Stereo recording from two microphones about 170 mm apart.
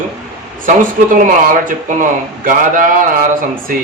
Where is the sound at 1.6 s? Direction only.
50° right (ahead or behind).